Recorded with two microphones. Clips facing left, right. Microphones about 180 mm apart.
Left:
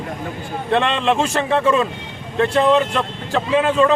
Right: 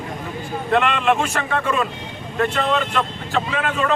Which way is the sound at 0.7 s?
30° left (ahead or behind).